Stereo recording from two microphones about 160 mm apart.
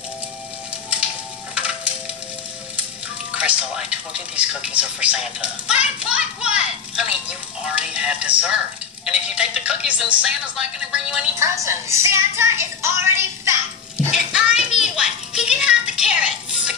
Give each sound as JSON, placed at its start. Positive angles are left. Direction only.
{"t": 1.5, "sound": "crushing", "side_deg": -5}
{"t": 3.3, "sound": "a man's voice", "side_deg": -5}
{"t": 11.3, "sound": "a man's voice", "side_deg": -20}
{"t": 14.1, "sound": "a sound", "side_deg": -5}
{"t": 14.8, "sound": "music", "side_deg": -5}